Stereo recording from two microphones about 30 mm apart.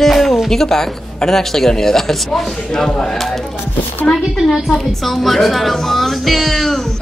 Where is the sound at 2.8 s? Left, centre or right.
Left.